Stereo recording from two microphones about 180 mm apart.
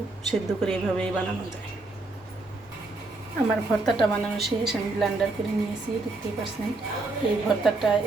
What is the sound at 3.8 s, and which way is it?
A woman's voice, centre (ahead or behind).